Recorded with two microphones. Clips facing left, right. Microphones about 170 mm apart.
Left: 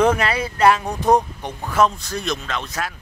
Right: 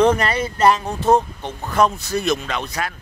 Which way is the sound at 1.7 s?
Centre (ahead or behind).